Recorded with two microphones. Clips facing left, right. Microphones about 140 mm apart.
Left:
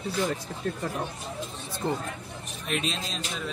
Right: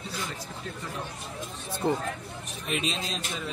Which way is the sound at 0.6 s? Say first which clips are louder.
Left 10 dB; 55° left (ahead or behind).